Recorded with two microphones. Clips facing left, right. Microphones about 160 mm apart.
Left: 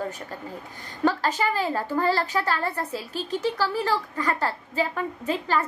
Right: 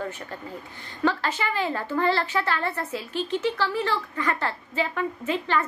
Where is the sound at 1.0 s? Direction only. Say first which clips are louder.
Left 2 dB; 40° left (ahead or behind).